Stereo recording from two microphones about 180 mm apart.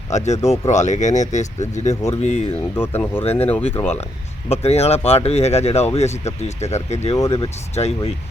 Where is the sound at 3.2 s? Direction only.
35° left (ahead or behind).